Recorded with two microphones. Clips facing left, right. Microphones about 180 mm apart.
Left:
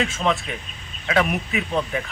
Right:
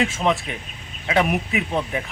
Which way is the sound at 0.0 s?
20° right (ahead or behind).